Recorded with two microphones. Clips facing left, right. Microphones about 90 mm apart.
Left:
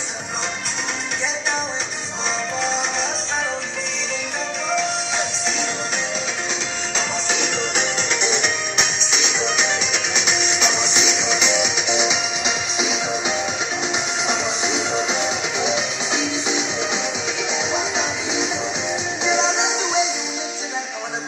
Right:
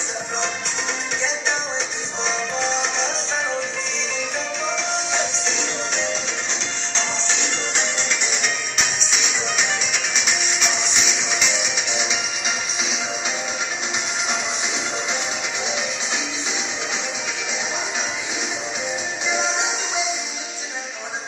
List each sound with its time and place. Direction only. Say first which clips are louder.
2.6 s music: even; centre (ahead or behind)
4.7 s music: left 4 dB; centre (ahead or behind)
7.0 s music: left 2 dB; 5° left (ahead or behind)